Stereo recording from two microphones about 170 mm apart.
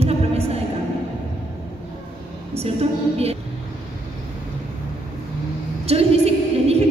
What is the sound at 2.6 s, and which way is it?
Speech, 35° right (ahead or behind).